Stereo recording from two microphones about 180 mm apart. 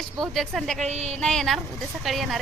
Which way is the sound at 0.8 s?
35° right (ahead or behind).